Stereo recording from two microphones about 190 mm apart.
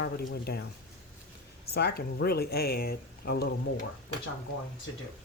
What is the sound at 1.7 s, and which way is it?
Speech, 55° left (ahead or behind).